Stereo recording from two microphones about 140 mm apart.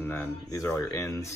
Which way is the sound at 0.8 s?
25° left (ahead or behind).